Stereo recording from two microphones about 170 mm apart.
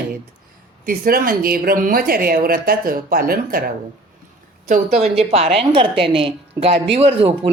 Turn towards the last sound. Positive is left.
turn(degrees=-35)  # may be behind; listen again after turning